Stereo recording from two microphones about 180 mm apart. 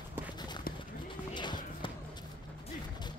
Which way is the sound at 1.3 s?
25° left (ahead or behind).